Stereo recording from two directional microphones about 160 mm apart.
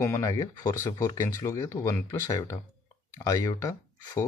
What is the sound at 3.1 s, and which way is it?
Speech, 20° left (ahead or behind).